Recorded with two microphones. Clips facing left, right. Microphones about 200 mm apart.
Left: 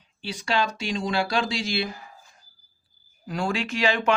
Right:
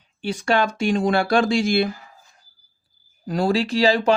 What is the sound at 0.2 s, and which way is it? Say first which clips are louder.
Speech: right 6 dB; 50° right (ahead or behind).